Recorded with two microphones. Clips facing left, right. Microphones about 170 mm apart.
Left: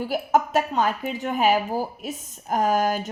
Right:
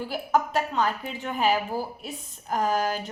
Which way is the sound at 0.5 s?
45° left (ahead or behind).